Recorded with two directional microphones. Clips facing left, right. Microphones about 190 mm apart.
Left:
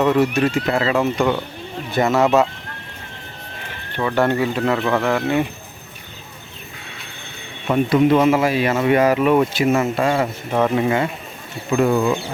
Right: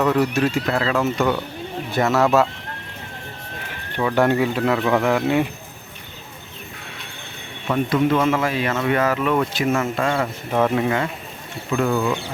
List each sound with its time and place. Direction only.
0.0 s a man's voice: centre (ahead or behind)
3.9 s a man's voice: 10° right (ahead or behind)
7.7 s speech: 15° left (ahead or behind)